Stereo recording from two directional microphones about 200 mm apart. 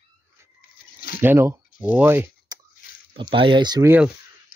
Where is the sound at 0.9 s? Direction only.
50° left (ahead or behind).